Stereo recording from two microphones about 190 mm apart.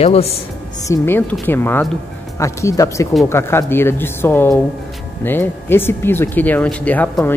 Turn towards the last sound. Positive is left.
turn(degrees=10)  # may be behind; listen again after turning